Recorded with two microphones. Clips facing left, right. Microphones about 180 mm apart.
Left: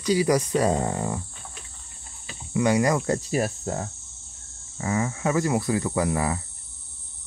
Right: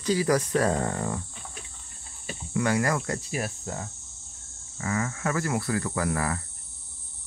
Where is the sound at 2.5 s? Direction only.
20° left (ahead or behind).